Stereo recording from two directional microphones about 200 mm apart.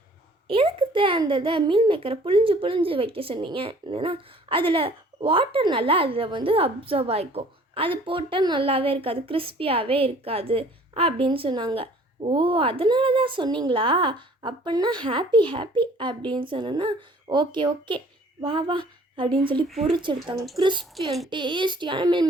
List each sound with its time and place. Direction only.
0.4 s a child's voice: 25° right (ahead or behind)